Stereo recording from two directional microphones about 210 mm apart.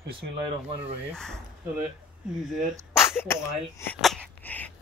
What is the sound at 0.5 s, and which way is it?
Speech, 30° right (ahead or behind).